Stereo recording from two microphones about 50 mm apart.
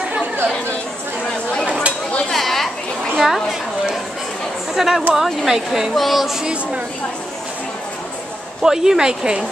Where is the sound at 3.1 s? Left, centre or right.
Centre.